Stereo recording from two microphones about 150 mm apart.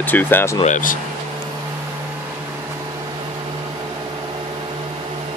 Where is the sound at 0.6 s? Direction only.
60° left (ahead or behind).